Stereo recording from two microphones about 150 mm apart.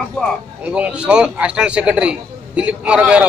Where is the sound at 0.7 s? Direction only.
5° right (ahead or behind).